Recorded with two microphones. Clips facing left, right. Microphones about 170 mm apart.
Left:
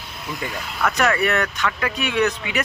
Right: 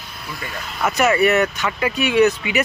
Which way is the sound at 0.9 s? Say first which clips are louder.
Right 4 dB; 5° right (ahead or behind).